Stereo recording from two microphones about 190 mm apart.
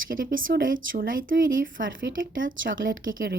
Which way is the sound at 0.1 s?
50° right (ahead or behind).